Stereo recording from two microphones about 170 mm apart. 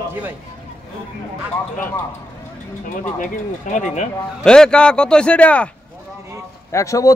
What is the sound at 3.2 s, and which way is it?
Speech, 45° left (ahead or behind).